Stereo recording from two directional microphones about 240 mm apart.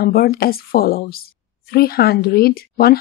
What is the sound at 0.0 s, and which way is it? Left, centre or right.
A woman's voice, left.